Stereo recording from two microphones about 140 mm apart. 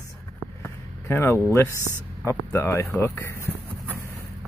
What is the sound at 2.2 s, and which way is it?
Speech, 20° left (ahead or behind).